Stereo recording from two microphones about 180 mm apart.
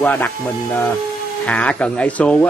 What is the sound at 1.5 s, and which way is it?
Speech, 10° left (ahead or behind).